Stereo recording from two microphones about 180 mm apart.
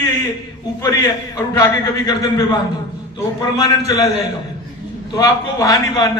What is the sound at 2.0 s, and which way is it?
Speech, 20° left (ahead or behind).